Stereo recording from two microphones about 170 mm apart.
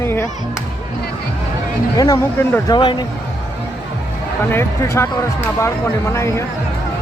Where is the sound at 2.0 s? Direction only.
20° left (ahead or behind).